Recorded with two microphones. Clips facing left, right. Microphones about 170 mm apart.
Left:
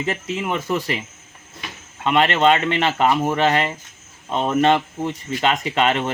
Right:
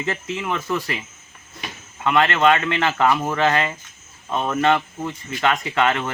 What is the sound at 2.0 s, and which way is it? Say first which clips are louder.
Speech: left 1 dB; 20° left (ahead or behind).